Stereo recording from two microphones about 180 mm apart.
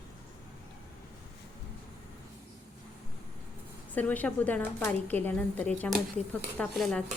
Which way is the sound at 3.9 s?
10° left (ahead or behind).